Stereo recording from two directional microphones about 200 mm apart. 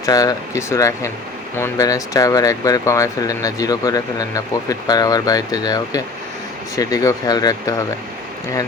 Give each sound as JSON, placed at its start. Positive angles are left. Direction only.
{"t": 0.0, "sound": "speech", "side_deg": 20}